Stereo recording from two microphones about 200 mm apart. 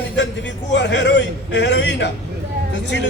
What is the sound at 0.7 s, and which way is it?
A man's voice, 60° left (ahead or behind).